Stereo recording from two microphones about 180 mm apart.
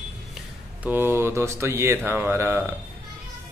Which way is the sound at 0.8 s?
10° right (ahead or behind).